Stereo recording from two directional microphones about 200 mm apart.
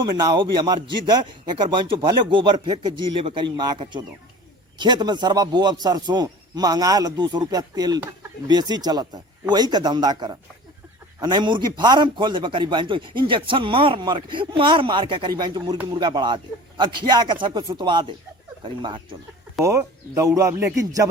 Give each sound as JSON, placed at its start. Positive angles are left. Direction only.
{"t": 0.2, "sound": "a man's voice", "side_deg": -20}